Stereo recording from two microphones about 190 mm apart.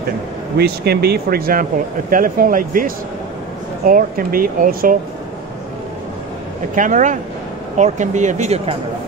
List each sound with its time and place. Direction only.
0.6 s speech: 55° right (ahead or behind)
6.7 s speech: 45° right (ahead or behind)